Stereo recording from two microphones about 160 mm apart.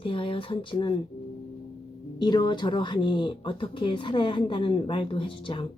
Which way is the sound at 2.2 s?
30° left (ahead or behind).